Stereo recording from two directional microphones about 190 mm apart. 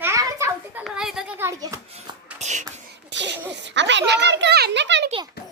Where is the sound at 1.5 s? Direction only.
20° right (ahead or behind).